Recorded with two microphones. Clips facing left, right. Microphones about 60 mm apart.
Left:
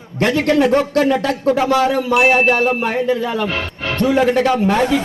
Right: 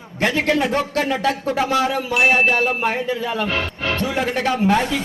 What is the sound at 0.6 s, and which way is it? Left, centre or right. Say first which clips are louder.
A man's voice: left 6 dB; left.